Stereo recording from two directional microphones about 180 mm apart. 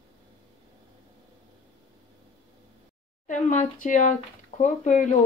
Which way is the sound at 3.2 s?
45° left (ahead or behind).